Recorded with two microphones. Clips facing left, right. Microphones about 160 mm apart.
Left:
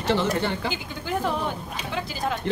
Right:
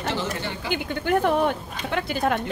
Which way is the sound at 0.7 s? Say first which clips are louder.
Right 6 dB; 60° right (ahead or behind).